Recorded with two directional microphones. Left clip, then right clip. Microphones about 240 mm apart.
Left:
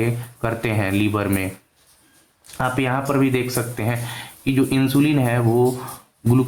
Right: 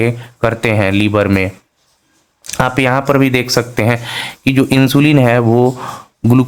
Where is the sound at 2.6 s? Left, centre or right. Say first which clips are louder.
Right 8 dB; right.